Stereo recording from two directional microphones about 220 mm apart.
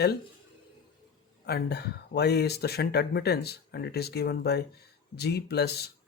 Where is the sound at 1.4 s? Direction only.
45° left (ahead or behind).